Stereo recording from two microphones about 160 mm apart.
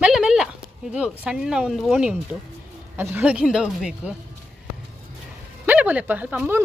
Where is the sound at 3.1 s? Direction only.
5° right (ahead or behind).